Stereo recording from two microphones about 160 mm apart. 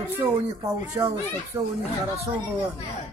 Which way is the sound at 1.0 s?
20° right (ahead or behind).